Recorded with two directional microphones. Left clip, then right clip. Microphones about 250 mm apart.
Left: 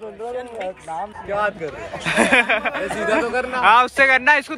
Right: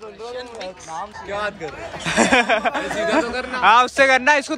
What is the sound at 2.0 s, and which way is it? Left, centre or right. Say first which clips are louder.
Speech: even; centre.